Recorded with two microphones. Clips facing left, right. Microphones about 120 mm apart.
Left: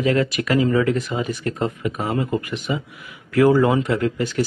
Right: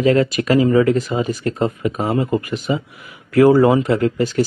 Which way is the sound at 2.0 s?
20° right (ahead or behind).